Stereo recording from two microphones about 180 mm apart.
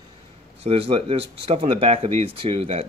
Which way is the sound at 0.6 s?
30° right (ahead or behind).